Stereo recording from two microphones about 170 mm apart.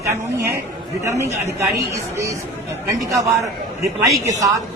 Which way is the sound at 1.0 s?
15° right (ahead or behind).